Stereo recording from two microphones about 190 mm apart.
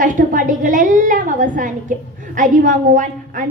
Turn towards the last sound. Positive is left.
turn(degrees=-40)  # may be behind; listen again after turning